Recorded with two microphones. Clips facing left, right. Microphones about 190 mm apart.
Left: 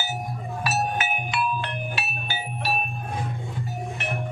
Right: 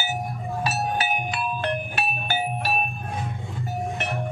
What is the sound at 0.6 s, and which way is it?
Music, 30° right (ahead or behind).